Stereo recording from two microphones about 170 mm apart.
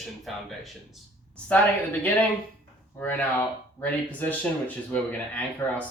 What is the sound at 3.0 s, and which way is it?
Speech, 10° left (ahead or behind).